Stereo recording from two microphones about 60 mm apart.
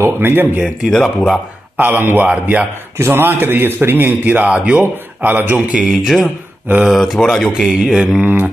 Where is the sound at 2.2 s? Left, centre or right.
Right.